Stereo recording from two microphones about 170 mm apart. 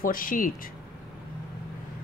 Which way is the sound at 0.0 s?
55° left (ahead or behind).